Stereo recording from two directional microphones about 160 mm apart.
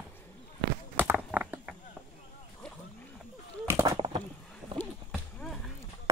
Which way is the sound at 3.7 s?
20° right (ahead or behind).